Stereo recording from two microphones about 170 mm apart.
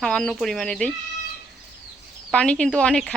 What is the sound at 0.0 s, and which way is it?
Speech, 5° left (ahead or behind).